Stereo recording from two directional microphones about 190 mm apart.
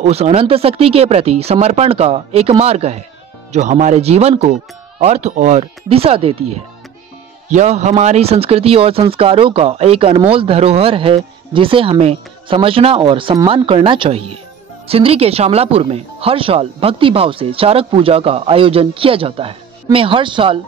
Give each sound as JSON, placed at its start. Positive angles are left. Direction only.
{"t": 0.0, "sound": "speech", "side_deg": -35}